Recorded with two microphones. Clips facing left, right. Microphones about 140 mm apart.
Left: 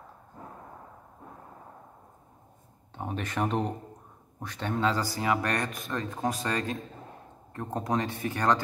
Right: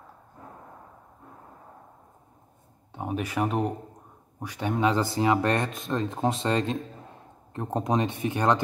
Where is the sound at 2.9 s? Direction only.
10° right (ahead or behind).